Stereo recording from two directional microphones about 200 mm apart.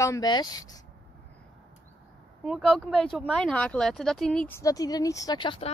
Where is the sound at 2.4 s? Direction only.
Centre (ahead or behind).